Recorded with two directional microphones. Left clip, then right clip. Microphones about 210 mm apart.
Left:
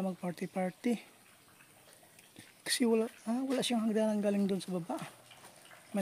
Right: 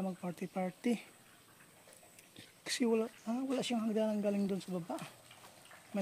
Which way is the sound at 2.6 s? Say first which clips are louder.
Left 3 dB; 20° left (ahead or behind).